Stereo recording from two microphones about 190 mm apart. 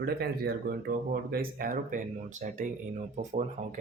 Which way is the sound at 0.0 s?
55° right (ahead or behind).